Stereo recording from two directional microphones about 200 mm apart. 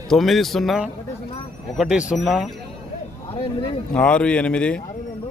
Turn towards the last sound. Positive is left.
turn(degrees=5)  # may be behind; listen again after turning